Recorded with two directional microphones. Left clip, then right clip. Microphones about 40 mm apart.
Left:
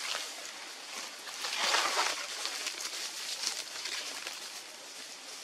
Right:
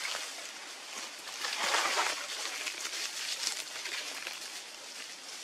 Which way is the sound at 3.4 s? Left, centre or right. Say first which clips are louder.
Even; right.